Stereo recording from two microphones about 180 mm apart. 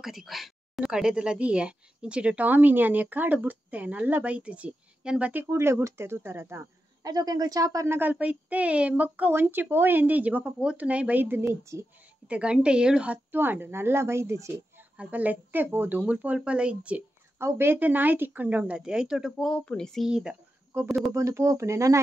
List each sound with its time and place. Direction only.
0.0 s speech: centre (ahead or behind); by 22.0 s 15° right (ahead or behind)